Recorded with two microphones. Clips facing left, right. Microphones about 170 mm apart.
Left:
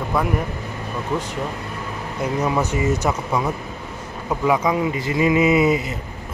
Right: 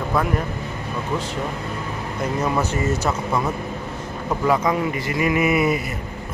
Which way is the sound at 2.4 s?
5° left (ahead or behind).